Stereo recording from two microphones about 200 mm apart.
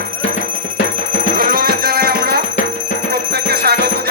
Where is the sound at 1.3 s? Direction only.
50° right (ahead or behind).